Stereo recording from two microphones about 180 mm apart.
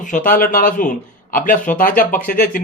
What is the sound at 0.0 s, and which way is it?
A man's voice, 45° left (ahead or behind).